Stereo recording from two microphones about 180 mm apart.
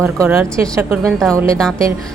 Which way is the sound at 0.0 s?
10° right (ahead or behind).